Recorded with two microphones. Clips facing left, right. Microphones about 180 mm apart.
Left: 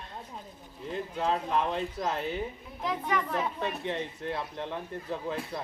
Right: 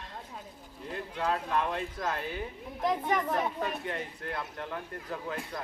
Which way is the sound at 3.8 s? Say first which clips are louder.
Left 3 dB; 25° left (ahead or behind).